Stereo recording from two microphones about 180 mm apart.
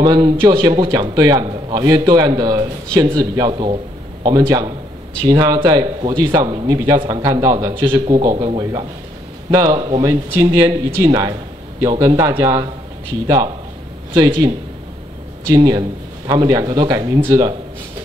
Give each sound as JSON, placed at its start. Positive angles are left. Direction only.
{"t": 0.0, "sound": "a man's voice", "side_deg": -25}
{"t": 15.5, "sound": "a man's voice", "side_deg": -20}